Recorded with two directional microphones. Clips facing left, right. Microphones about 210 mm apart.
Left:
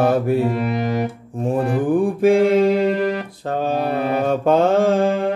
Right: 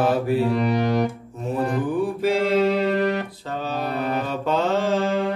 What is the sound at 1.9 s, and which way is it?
Mantra, 50° left (ahead or behind).